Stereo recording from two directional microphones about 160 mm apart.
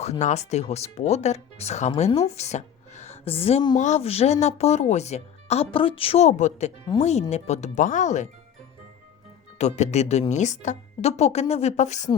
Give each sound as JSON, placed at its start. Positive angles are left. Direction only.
{"t": 0.0, "sound": "speech", "side_deg": 45}
{"t": 3.8, "sound": "speech", "side_deg": 45}
{"t": 9.6, "sound": "speech", "side_deg": 45}